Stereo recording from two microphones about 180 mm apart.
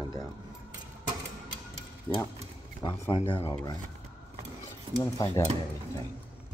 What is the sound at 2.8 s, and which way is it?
Speech, 25° left (ahead or behind).